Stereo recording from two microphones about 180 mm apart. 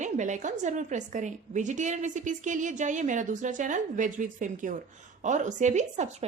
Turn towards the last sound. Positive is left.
turn(degrees=-40)  # may be behind; listen again after turning